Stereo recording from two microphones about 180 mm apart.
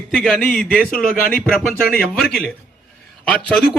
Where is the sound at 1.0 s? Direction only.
50° left (ahead or behind).